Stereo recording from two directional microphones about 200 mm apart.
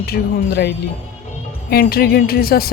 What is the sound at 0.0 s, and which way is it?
Speech, 50° left (ahead or behind).